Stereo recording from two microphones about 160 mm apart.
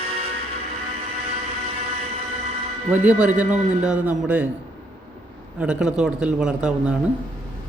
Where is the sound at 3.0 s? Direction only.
10° right (ahead or behind).